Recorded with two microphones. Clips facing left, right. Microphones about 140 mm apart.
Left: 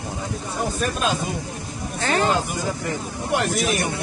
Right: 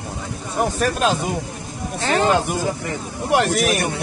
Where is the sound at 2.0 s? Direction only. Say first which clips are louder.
Right 2 dB; 20° right (ahead or behind).